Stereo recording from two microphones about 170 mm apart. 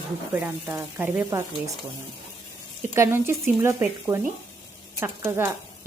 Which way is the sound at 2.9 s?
15° right (ahead or behind).